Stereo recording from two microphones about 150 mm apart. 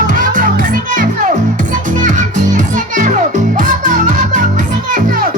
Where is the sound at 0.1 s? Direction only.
60° right (ahead or behind).